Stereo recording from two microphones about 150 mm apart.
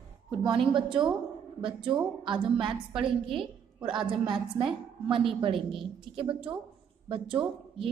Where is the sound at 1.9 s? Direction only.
30° right (ahead or behind).